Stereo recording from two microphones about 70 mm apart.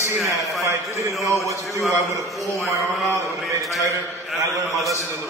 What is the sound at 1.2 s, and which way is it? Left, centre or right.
Speech, left.